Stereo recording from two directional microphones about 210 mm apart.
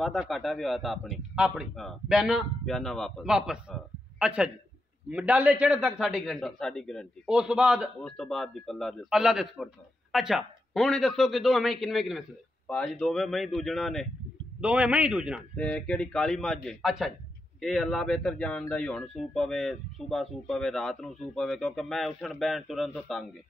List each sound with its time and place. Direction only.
0.0 s speech: centre (ahead or behind)